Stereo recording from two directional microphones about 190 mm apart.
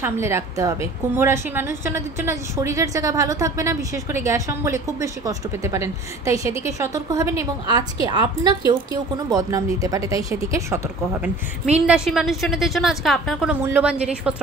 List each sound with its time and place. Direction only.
0.0 s a woman's voice: 15° right (ahead or behind)